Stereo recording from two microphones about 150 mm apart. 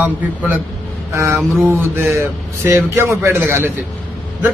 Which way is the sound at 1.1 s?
20° right (ahead or behind).